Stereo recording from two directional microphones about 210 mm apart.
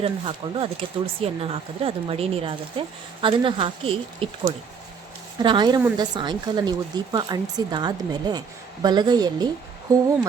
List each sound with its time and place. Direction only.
0.0 s speech: 25° right (ahead or behind)